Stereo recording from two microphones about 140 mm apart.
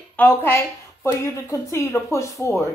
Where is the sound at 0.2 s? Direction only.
15° left (ahead or behind).